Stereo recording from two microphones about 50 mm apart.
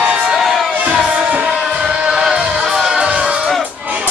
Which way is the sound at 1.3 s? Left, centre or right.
Centre.